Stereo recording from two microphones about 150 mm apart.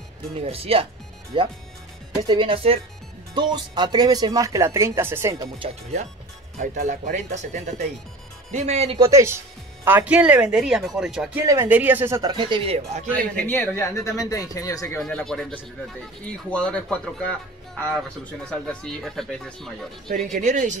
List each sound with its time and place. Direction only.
0.4 s speech: 40° right (ahead or behind); by 5.5 s 20° right (ahead or behind)
6.6 s speech: 60° right (ahead or behind)
8.9 s speech: 20° right (ahead or behind); by 11.4 s 5° right (ahead or behind)
11.4 s speech: 15° right (ahead or behind); by 13.0 s 45° right (ahead or behind)
13.4 s a man's voice: 15° left (ahead or behind)
15.0 s speech: 5° left (ahead or behind)
20.2 s speech: 55° right (ahead or behind)